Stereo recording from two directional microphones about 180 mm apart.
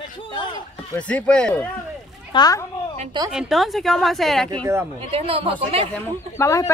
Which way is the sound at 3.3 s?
Centre (ahead or behind).